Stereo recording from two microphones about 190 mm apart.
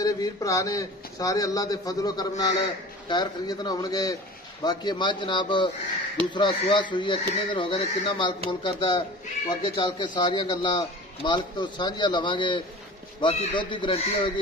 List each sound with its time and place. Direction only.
0.0 s a man's voice: 20° left (ahead or behind)